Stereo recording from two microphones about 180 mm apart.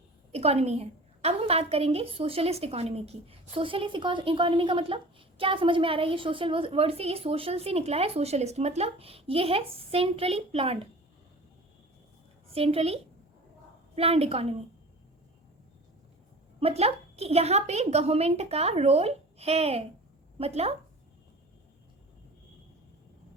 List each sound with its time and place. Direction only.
0.3 s a woman's voice: 35° right (ahead or behind)
12.5 s a woman's voice: 35° right (ahead or behind)
16.6 s a woman's voice: 35° right (ahead or behind)